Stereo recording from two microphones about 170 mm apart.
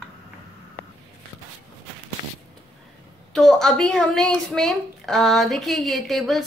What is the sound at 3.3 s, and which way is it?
A woman's voice, centre (ahead or behind).